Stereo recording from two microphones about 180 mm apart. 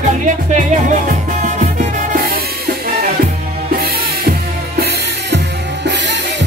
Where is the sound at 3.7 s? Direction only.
60° right (ahead or behind).